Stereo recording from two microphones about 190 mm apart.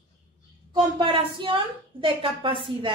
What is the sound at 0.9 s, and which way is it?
Speech, 25° right (ahead or behind).